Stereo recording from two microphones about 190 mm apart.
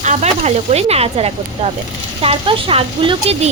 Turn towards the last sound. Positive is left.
turn(degrees=-30)  # may be behind; listen again after turning